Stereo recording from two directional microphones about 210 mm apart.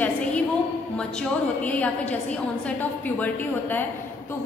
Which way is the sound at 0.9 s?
5° left (ahead or behind).